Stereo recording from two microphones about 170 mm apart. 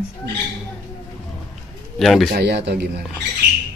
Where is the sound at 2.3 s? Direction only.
75° right (ahead or behind).